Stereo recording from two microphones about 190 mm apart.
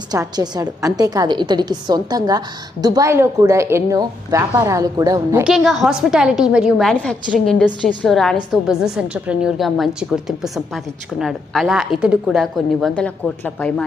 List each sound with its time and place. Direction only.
0.1 s a woman's voice: 20° right (ahead or behind)
5.4 s a woman's voice: centre (ahead or behind)